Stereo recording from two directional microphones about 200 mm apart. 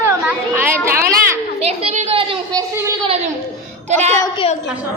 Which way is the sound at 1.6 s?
30° right (ahead or behind).